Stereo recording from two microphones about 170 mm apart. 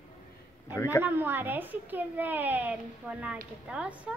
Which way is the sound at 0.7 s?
20° left (ahead or behind).